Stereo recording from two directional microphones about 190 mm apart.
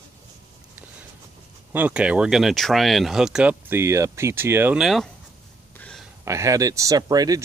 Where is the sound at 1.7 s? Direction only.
5° right (ahead or behind).